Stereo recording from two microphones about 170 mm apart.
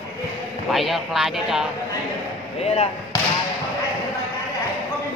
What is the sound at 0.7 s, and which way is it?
Speech, centre (ahead or behind).